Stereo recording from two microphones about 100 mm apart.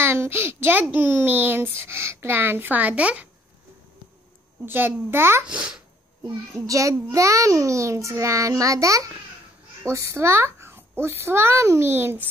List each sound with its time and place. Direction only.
0.0 s a woman's voice: 25° right (ahead or behind)
4.6 s a child's voice: 20° right (ahead or behind)
5.5 s speech: 10° right (ahead or behind)
6.2 s a child's voice: 35° right (ahead or behind)